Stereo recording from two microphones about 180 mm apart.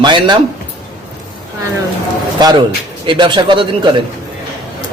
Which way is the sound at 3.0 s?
25° right (ahead or behind).